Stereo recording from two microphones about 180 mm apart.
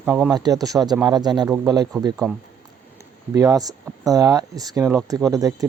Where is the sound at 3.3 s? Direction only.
20° right (ahead or behind).